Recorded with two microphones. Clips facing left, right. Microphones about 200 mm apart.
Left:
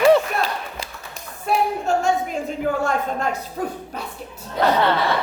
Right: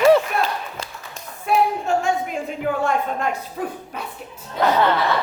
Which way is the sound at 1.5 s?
40° left (ahead or behind).